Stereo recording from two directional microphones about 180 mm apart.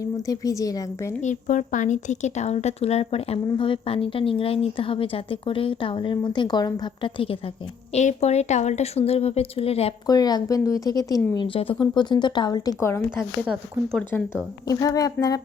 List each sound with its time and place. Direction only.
0.0 s speech: 20° left (ahead or behind)
1.2 s a woman's voice: 45° left (ahead or behind)
10.1 s speech: 20° left (ahead or behind)
13.1 s speech: 5° right (ahead or behind)
14.0 s speech: 10° left (ahead or behind)